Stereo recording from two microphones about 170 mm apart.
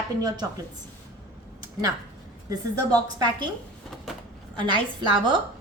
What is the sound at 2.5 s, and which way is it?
A woman's voice, 20° right (ahead or behind).